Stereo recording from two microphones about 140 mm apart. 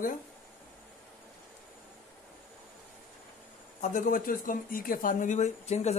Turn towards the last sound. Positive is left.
turn(degrees=50)  # may be behind; listen again after turning